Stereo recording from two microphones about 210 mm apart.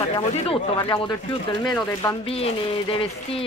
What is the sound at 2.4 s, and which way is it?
Speech, 25° left (ahead or behind).